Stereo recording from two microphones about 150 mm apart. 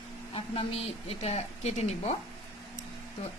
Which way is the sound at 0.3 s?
40° left (ahead or behind).